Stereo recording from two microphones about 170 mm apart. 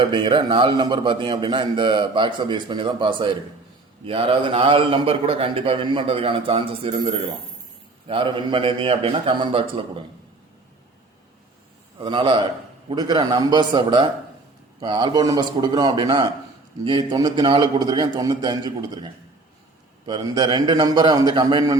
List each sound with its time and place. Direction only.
0.0 s a man's voice: 30° right (ahead or behind)
11.9 s a man's voice: 30° right (ahead or behind)